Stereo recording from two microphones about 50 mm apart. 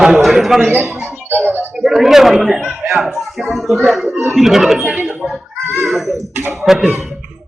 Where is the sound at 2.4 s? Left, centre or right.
Centre.